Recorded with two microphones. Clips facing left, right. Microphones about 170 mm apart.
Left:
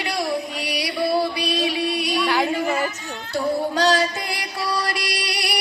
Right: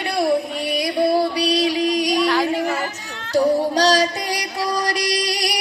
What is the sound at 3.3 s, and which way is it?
Child singing, 40° right (ahead or behind).